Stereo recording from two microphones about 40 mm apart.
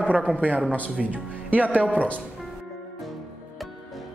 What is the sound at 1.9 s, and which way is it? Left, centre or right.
Speech, left.